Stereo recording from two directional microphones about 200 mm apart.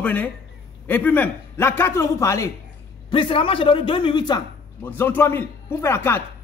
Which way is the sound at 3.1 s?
25° left (ahead or behind).